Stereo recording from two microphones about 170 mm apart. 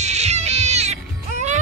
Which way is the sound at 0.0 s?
40° right (ahead or behind).